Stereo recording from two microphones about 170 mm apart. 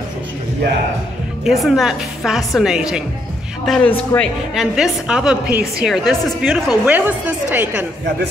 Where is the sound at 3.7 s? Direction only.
5° left (ahead or behind).